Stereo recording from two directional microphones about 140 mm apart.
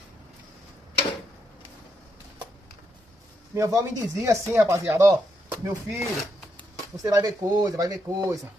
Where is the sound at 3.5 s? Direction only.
20° right (ahead or behind).